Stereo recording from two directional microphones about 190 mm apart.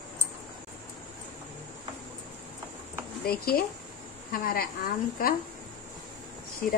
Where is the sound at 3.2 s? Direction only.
50° left (ahead or behind).